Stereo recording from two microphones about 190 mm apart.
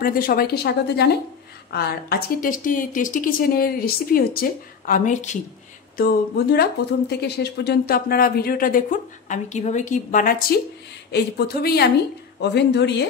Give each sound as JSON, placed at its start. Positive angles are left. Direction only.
{"t": 0.0, "sound": "speech", "side_deg": 50}
{"t": 5.9, "sound": "speech", "side_deg": 55}
{"t": 11.1, "sound": "speech", "side_deg": 60}